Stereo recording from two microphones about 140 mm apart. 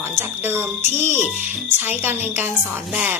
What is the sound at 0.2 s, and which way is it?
Speech, 15° right (ahead or behind).